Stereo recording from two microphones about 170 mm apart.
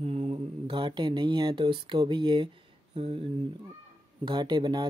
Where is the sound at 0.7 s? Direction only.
25° right (ahead or behind).